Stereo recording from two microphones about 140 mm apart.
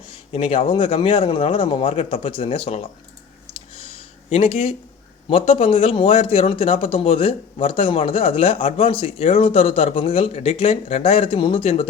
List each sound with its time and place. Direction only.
0.3 s speech: 40° left (ahead or behind)
3.5 s a sound: 40° left (ahead or behind)
5.3 s speech: 40° left (ahead or behind)